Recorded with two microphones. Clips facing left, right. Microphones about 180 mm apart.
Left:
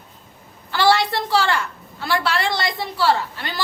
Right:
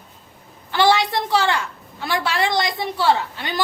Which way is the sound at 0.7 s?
15° right (ahead or behind).